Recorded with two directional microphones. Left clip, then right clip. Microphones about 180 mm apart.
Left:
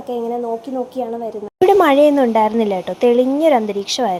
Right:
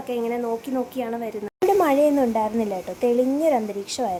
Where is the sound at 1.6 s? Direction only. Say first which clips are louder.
Left 7 dB; 15° left (ahead or behind).